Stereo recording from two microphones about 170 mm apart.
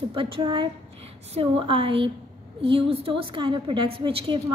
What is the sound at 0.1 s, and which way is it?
A woman's voice, 30° right (ahead or behind).